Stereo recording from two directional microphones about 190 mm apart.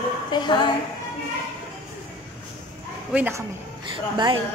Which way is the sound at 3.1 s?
10° right (ahead or behind).